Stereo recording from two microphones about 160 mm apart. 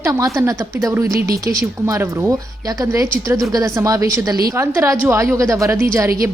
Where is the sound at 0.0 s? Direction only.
20° right (ahead or behind).